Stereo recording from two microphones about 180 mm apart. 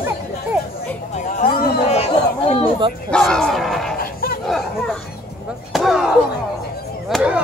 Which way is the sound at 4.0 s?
55° left (ahead or behind).